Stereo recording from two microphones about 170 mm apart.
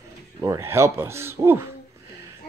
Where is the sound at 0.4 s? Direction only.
15° right (ahead or behind).